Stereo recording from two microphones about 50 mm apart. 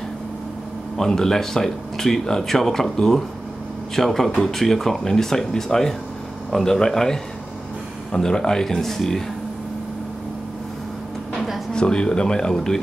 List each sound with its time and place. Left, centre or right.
0.9 s speech: centre
11.7 s speech: centre